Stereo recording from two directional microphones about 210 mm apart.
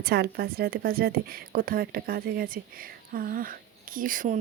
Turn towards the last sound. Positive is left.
turn(degrees=-40)  # may be behind; listen again after turning